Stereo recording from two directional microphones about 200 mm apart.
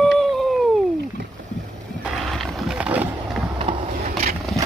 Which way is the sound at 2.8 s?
5° right (ahead or behind).